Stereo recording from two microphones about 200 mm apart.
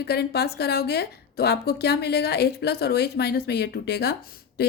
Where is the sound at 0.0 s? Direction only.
55° left (ahead or behind).